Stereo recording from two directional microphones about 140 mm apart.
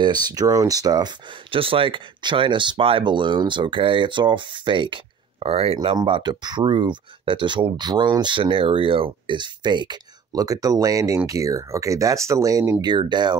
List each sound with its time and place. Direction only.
0.0 s speech: 30° right (ahead or behind)